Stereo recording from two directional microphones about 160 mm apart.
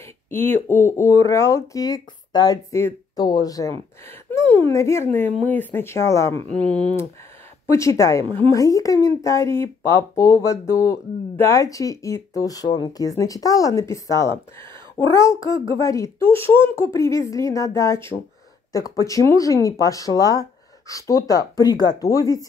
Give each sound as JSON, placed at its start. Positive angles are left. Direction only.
{"t": 0.3, "sound": "a woman's voice", "side_deg": 15}
{"t": 6.5, "sound": "speech", "side_deg": 5}
{"t": 7.6, "sound": "a woman's voice", "side_deg": 20}